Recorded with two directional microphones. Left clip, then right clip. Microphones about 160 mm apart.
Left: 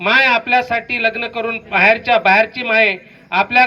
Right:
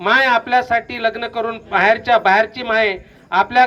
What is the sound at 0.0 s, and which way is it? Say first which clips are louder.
A woman's voice: left 1 dB; 25° left (ahead or behind).